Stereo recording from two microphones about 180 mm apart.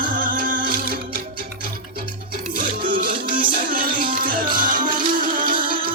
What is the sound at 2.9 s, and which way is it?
Music, 55° right (ahead or behind).